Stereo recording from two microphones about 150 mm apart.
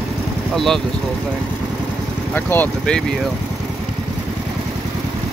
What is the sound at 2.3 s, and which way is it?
Speech, 10° left (ahead or behind).